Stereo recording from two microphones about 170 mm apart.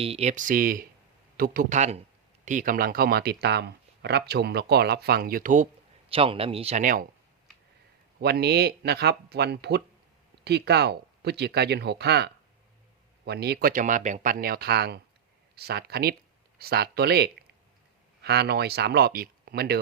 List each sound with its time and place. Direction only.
0.0 s speech: 35° right (ahead or behind)
6.1 s speech: 35° right (ahead or behind); by 7.1 s 50° right (ahead or behind)
8.2 s speech: 70° right (ahead or behind)